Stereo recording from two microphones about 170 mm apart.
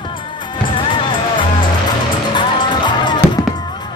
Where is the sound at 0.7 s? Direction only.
30° left (ahead or behind).